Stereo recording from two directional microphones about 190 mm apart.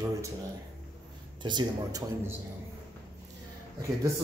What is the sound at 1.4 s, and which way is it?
Speech, 25° right (ahead or behind).